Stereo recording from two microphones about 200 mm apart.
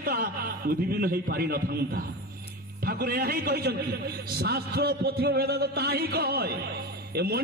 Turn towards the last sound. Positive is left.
turn(degrees=-50)  # may be behind; listen again after turning